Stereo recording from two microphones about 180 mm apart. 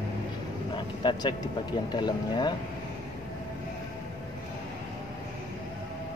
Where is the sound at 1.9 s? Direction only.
25° left (ahead or behind).